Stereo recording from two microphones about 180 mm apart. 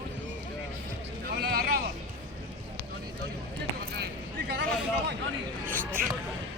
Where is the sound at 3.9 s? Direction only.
65° right (ahead or behind).